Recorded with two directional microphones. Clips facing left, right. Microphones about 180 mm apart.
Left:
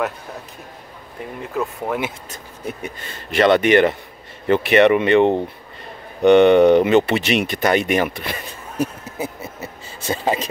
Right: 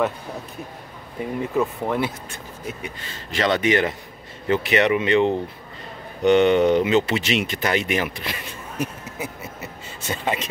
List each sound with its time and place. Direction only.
1.4 s speech: centre (ahead or behind)
2.8 s speech: 55° left (ahead or behind); by 10.5 s 35° left (ahead or behind)